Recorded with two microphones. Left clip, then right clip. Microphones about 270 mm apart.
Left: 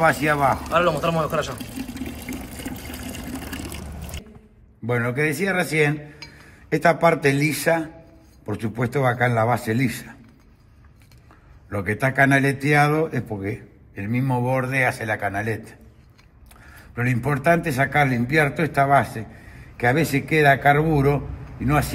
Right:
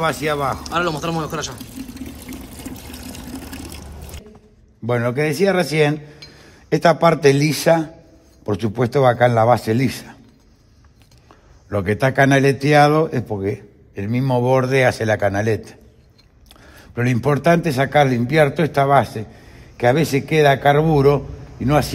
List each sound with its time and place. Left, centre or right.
0.0 s speech: centre
2.2 s water: right
4.8 s a man's voice: right
11.7 s a man's voice: right
16.9 s a man's voice: right